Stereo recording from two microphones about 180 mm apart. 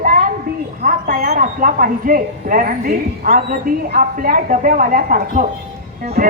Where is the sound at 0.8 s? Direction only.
50° right (ahead or behind).